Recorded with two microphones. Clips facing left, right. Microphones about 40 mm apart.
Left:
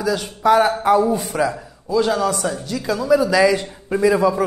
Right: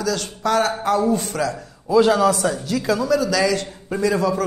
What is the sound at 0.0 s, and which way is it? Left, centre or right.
A man's voice, centre.